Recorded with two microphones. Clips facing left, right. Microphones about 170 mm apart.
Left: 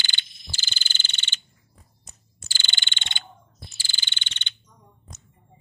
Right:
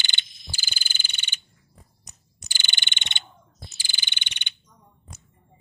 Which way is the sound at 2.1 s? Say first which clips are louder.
Left 2 dB; 15° right (ahead or behind).